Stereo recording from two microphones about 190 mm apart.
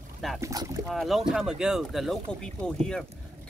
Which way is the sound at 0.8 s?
Centre (ahead or behind).